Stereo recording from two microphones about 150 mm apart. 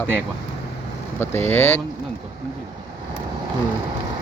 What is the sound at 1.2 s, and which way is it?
Speech, 15° left (ahead or behind).